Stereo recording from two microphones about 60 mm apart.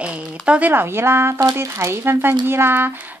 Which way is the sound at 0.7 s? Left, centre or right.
Right.